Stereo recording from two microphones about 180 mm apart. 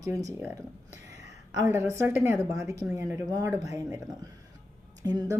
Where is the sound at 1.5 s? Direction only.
15° right (ahead or behind).